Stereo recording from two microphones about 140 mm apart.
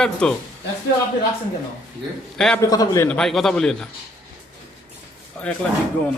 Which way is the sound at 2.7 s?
25° left (ahead or behind).